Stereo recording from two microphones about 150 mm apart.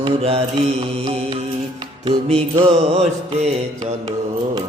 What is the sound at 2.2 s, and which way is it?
Music, 40° right (ahead or behind).